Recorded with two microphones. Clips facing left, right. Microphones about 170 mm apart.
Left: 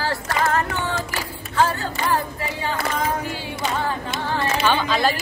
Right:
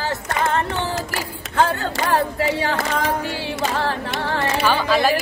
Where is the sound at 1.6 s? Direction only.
75° right (ahead or behind).